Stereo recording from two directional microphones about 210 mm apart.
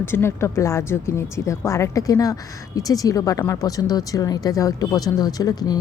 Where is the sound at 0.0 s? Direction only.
10° left (ahead or behind).